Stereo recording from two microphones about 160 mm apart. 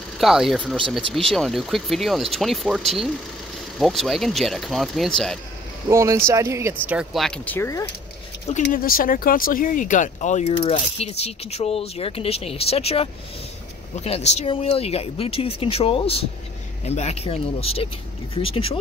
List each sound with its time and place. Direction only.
0.2 s speech: centre (ahead or behind)
5.9 s speech: 20° right (ahead or behind)
7.2 s speech: 5° left (ahead or behind)
8.6 s speech: 65° left (ahead or behind); by 18.8 s 35° left (ahead or behind)